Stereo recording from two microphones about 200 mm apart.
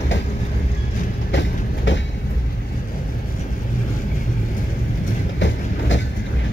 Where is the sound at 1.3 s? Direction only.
65° left (ahead or behind).